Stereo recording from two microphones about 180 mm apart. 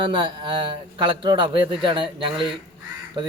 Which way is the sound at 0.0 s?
30° right (ahead or behind).